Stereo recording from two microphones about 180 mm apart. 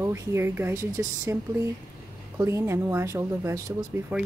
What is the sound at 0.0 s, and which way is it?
Speech, 15° right (ahead or behind).